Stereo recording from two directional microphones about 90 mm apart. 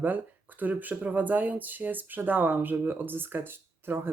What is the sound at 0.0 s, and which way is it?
Speech, 20° right (ahead or behind).